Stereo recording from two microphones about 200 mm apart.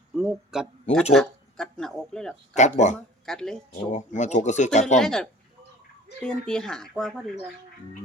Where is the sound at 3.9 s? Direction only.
35° left (ahead or behind).